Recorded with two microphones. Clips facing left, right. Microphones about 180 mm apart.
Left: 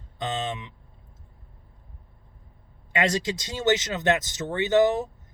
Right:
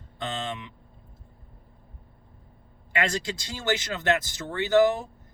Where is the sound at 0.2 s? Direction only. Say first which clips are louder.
Left 3 dB; 20° left (ahead or behind).